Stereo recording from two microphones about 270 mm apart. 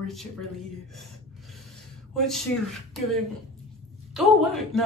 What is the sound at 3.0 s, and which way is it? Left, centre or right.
Speech, centre.